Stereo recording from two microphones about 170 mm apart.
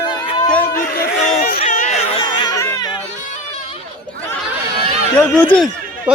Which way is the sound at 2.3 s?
25° left (ahead or behind).